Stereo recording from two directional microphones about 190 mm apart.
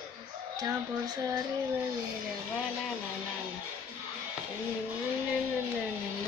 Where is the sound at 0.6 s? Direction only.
20° right (ahead or behind).